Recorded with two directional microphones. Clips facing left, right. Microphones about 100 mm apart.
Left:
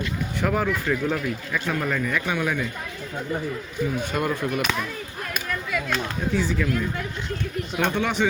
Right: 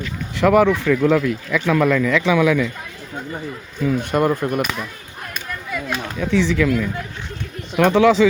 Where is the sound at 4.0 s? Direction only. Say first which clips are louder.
Right 7 dB; 55° right (ahead or behind).